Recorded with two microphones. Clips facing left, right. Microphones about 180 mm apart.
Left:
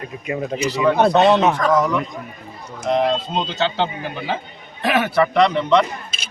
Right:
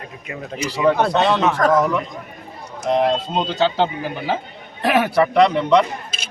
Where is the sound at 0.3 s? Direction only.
15° left (ahead or behind).